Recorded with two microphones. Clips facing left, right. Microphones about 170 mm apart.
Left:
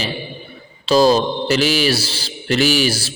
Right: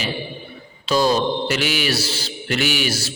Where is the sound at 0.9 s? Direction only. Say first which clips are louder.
Left 5 dB; 35° left (ahead or behind).